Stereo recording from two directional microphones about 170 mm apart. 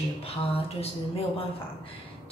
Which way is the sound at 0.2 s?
35° left (ahead or behind).